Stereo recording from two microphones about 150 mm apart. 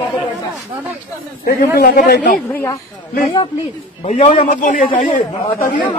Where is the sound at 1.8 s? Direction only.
90° left.